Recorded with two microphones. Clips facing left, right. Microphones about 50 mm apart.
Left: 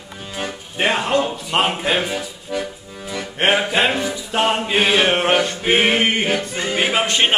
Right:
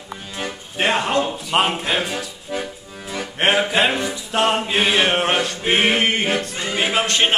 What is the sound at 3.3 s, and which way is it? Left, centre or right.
Music, centre.